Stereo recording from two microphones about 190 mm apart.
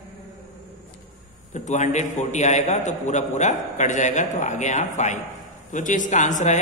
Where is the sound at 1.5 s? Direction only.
40° left (ahead or behind).